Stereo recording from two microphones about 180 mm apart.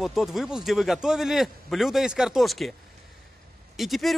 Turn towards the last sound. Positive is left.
turn(degrees=0)  # may be behind; listen again after turning